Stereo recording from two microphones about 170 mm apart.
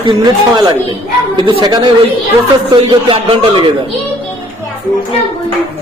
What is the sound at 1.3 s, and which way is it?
Speech, 25° right (ahead or behind).